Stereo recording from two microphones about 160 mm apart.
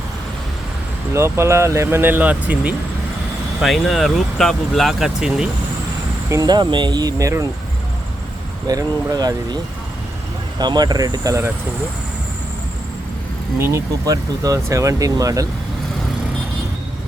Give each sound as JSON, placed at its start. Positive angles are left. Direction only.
{"t": 1.1, "sound": "speech", "side_deg": -15}
{"t": 6.3, "sound": "speech", "side_deg": -25}
{"t": 8.6, "sound": "speech", "side_deg": -25}
{"t": 10.6, "sound": "speech", "side_deg": -25}
{"t": 13.6, "sound": "speech", "side_deg": -20}